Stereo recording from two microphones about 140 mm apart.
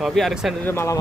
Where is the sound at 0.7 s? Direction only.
20° left (ahead or behind).